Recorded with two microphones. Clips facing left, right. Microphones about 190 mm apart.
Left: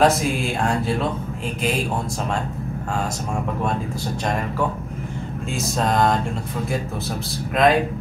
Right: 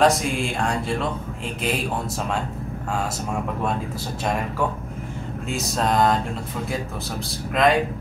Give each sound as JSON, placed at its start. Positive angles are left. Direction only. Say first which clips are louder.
{"t": 0.0, "sound": "speech", "louder": "left 1 dB", "side_deg": 0}
{"t": 5.5, "sound": "speech", "louder": "left 1 dB", "side_deg": 0}
{"t": 7.6, "sound": "speech", "louder": "left 2 dB", "side_deg": 0}